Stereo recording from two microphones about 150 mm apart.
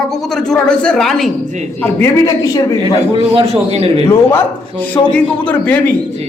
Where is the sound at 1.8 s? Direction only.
15° left (ahead or behind).